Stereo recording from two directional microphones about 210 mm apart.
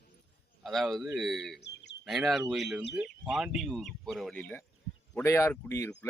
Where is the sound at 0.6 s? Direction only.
Centre (ahead or behind).